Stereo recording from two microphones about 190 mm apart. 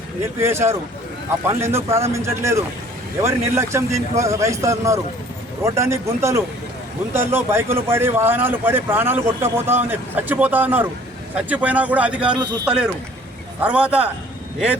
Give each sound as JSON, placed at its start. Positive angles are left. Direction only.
{"t": 0.3, "sound": "speech", "side_deg": -15}